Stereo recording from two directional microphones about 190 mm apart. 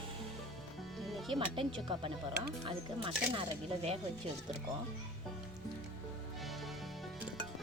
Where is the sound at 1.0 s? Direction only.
Centre (ahead or behind).